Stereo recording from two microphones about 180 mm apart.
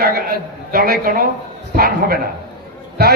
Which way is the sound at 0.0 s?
55° right (ahead or behind).